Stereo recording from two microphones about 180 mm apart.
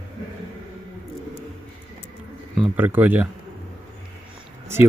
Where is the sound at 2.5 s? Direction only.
5° right (ahead or behind).